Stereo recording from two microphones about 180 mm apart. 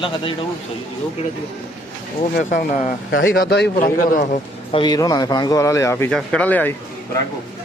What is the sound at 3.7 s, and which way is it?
Speech, 45° left (ahead or behind).